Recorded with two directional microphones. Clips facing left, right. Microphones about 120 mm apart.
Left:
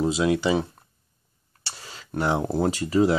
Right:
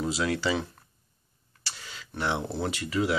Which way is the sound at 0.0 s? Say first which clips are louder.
Left 6 dB; 20° left (ahead or behind).